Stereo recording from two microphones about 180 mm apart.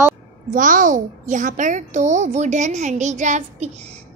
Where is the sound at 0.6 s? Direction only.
50° right (ahead or behind).